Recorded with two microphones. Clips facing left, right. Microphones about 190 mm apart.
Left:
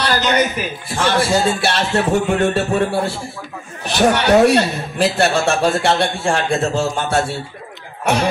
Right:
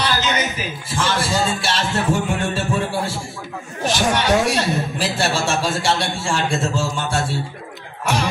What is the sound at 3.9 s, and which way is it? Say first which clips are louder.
A man's voice: left 6 dB; 65° left (ahead or behind).